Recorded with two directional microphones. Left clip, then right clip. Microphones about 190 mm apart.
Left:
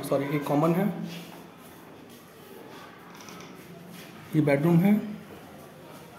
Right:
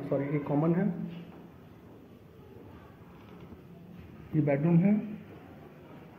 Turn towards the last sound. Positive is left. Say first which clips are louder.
# left 5 dB
turn(degrees=25)  # may be behind; listen again after turning